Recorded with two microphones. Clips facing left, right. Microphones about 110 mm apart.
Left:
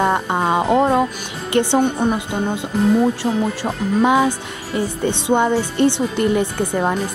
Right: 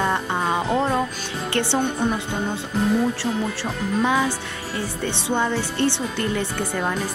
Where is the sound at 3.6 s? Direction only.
15° left (ahead or behind).